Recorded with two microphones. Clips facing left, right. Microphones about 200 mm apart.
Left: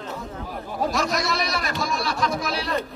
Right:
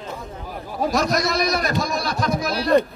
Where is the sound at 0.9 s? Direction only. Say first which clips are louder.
Right 6 dB; 40° right (ahead or behind).